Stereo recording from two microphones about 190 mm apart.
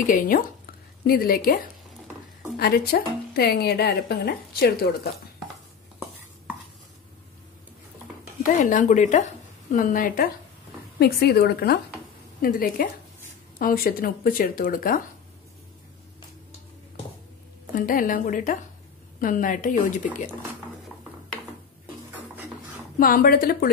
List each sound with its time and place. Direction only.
0.0 s a woman's voice: 40° left (ahead or behind)
8.4 s a woman's voice: 45° left (ahead or behind)
17.7 s speech: 45° left (ahead or behind)
22.9 s speech: 50° left (ahead or behind)